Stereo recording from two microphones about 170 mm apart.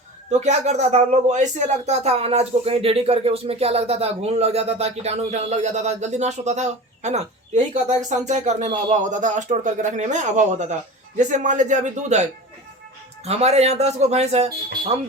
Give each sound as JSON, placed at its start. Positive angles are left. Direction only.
{"t": 0.3, "sound": "speech", "side_deg": -40}